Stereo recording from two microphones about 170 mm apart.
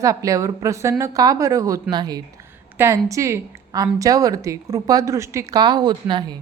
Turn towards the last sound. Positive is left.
turn(degrees=-25)  # may be behind; listen again after turning